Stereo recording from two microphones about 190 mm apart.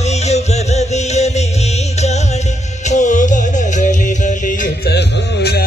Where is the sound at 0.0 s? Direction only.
35° left (ahead or behind).